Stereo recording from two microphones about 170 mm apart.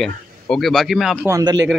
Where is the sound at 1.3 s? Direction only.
20° right (ahead or behind).